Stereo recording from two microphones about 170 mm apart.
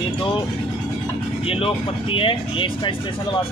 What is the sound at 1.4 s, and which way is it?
Speech, 35° left (ahead or behind).